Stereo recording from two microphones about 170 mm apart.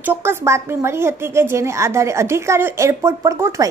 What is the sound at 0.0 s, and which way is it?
A woman's voice, 15° right (ahead or behind).